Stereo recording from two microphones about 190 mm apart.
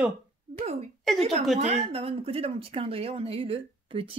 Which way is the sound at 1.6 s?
35° right (ahead or behind).